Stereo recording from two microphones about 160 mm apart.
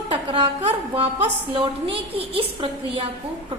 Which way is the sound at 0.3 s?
35° right (ahead or behind).